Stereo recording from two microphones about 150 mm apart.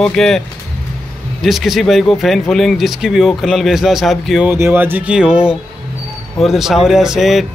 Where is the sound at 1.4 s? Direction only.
Centre (ahead or behind).